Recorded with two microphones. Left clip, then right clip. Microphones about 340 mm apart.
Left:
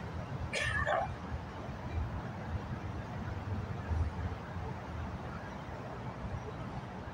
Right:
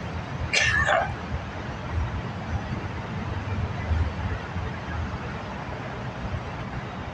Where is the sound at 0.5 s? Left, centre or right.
Left.